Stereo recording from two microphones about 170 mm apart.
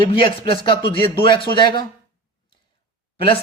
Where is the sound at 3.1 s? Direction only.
30° left (ahead or behind).